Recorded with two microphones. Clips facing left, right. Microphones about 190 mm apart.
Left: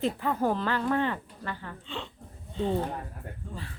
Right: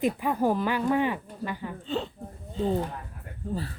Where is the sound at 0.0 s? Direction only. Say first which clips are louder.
Right 2 dB; 15° right (ahead or behind).